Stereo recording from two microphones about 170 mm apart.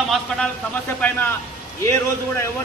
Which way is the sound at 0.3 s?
5° left (ahead or behind).